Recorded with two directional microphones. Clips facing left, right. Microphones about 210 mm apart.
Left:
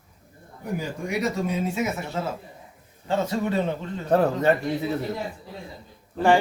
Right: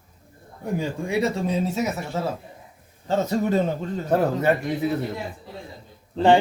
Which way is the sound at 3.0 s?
40° right (ahead or behind).